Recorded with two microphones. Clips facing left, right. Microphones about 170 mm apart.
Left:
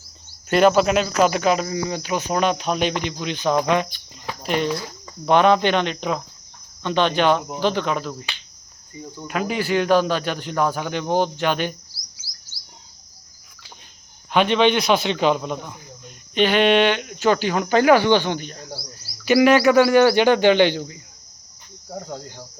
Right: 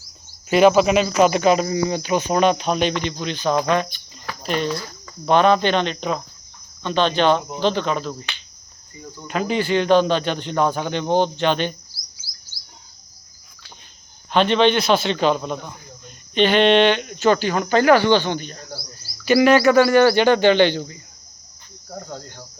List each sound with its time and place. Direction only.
0.5 s speech: 5° right (ahead or behind)
12.2 s a sound: 70° left (ahead or behind)
14.3 s speech: 10° left (ahead or behind)